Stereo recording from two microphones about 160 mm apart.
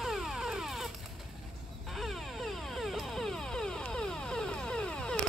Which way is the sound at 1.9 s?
Centre (ahead or behind).